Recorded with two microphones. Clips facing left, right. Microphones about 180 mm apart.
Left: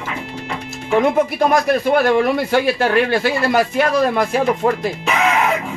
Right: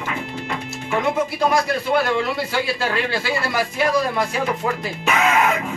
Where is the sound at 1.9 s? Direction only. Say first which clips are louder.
Left 6 dB; 55° left (ahead or behind).